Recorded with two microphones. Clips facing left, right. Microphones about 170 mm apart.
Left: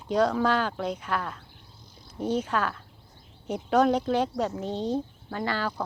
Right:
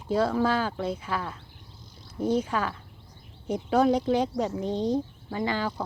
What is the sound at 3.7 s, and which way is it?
Speech, 10° right (ahead or behind).